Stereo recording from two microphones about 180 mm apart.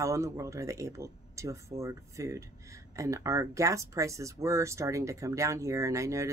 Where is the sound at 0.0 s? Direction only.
15° right (ahead or behind).